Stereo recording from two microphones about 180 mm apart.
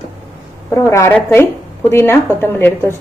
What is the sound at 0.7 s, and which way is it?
A woman's voice, 15° left (ahead or behind).